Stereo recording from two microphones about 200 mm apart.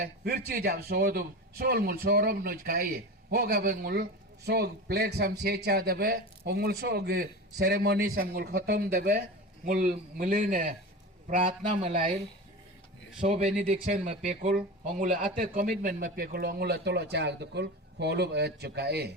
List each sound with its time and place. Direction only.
0.0 s a man's voice: 50° right (ahead or behind)
13.2 s a man's voice: 40° right (ahead or behind); by 19.1 s 55° right (ahead or behind)